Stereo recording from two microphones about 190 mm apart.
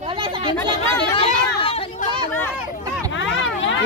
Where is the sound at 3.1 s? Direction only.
80° left.